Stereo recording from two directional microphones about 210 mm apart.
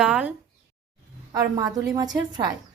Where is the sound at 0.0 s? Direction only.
5° right (ahead or behind).